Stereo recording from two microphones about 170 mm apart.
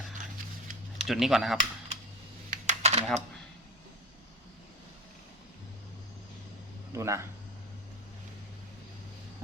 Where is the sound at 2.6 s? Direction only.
40° right (ahead or behind).